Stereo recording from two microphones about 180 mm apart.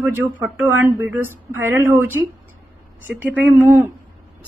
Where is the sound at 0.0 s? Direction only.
15° right (ahead or behind).